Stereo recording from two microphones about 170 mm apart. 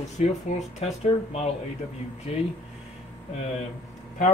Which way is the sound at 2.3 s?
35° left (ahead or behind).